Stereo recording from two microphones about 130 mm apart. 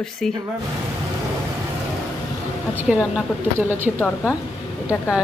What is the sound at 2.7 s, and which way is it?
Speech, 5° right (ahead or behind).